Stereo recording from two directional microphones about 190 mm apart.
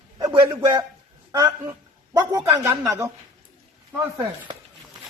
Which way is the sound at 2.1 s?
20° right (ahead or behind).